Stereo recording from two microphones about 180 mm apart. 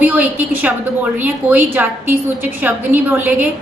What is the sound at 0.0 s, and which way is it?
A woman's voice, 10° right (ahead or behind).